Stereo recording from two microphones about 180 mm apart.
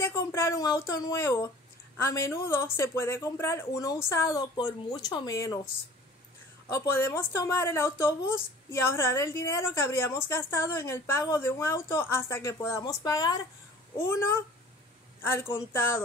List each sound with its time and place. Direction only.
0.0 s a woman's voice: 15° left (ahead or behind)
6.7 s a woman's voice: 15° left (ahead or behind)